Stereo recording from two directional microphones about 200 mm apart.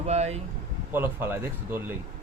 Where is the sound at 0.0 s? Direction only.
35° right (ahead or behind).